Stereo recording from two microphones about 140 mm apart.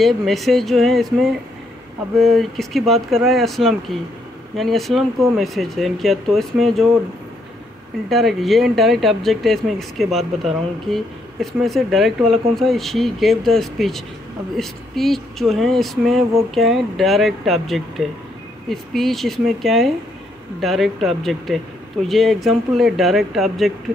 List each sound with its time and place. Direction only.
0.0 s speech: centre (ahead or behind)
8.1 s speech: centre (ahead or behind)